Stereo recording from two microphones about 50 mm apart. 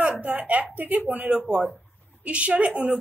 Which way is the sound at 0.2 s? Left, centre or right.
Right.